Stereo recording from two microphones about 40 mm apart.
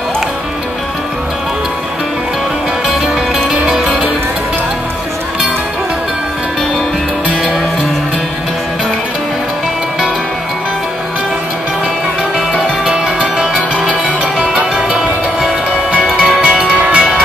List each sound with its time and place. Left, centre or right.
12.4 s music: centre
16.2 s music: right